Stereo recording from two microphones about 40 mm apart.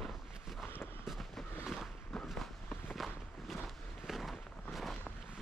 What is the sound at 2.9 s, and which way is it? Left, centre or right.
Walk, centre.